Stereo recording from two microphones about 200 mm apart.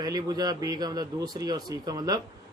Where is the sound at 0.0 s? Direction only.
20° right (ahead or behind).